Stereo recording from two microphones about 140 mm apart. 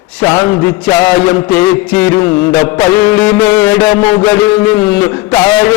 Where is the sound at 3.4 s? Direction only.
15° left (ahead or behind).